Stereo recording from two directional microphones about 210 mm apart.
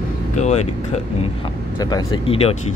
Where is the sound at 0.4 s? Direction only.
30° left (ahead or behind).